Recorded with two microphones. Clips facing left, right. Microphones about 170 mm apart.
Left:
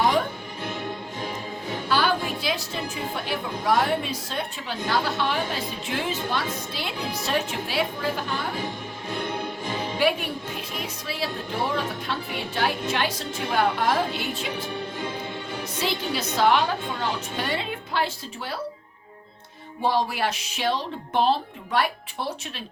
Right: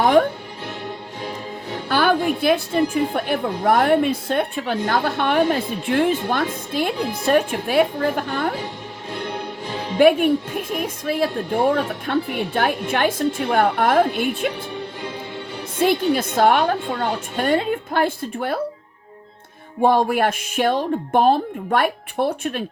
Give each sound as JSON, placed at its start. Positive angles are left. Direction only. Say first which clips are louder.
{"t": 0.0, "sound": "music", "louder": "right 7 dB", "side_deg": -55}
{"t": 1.9, "sound": "a woman's voice", "louder": "right 6 dB", "side_deg": -55}
{"t": 9.0, "sound": "music", "louder": "right 1 dB", "side_deg": -20}
{"t": 10.0, "sound": "a woman's voice", "louder": "right 12 dB", "side_deg": -50}
{"t": 15.8, "sound": "a woman's voice", "louder": "right 10 dB", "side_deg": -50}
{"t": 19.8, "sound": "a woman's voice", "louder": "right 7 dB", "side_deg": -55}